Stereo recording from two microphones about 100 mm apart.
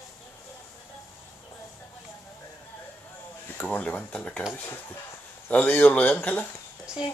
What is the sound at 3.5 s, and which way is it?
Speech, 15° left (ahead or behind).